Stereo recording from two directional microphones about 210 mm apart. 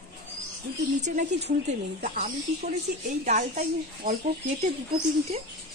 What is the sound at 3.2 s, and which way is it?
Speech, 40° right (ahead or behind).